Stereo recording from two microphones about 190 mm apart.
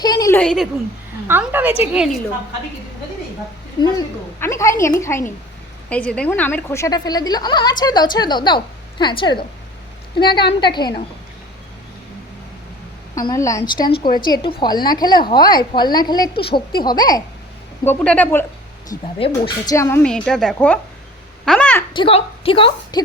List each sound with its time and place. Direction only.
0.0 s a sound: 20° left (ahead or behind)
0.3 s a woman's voice: centre (ahead or behind)
1.3 s a woman's voice: 10° right (ahead or behind)
3.8 s a woman's voice: 15° left (ahead or behind)
13.1 s a woman's voice: 15° left (ahead or behind)
14.1 s a woman's voice: 50° left (ahead or behind)
14.6 s a woman's voice: 20° left (ahead or behind)
17.8 s a woman's voice: 5° left (ahead or behind)
18.9 s a woman's voice: 20° left (ahead or behind)
21.9 s a woman's voice: 30° left (ahead or behind)